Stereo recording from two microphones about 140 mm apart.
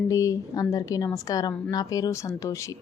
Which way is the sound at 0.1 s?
25° left (ahead or behind).